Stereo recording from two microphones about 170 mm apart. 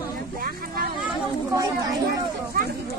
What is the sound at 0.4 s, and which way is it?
Vehicle, 60° right (ahead or behind).